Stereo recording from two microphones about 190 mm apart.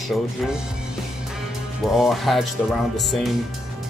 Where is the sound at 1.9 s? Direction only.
Centre (ahead or behind).